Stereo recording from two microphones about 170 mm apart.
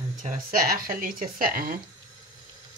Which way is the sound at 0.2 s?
60° right (ahead or behind).